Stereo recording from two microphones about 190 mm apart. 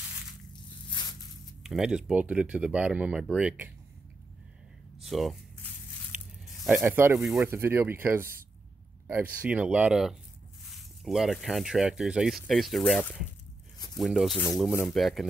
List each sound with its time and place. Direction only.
0.8 s a sound: 25° left (ahead or behind)
1.6 s speech: 5° right (ahead or behind)
5.0 s speech: centre (ahead or behind)
6.6 s speech: 10° right (ahead or behind)
14.7 s speech: 10° left (ahead or behind)
15.0 s speech: centre (ahead or behind)